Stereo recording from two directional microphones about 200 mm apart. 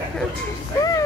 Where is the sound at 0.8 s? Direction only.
20° left (ahead or behind).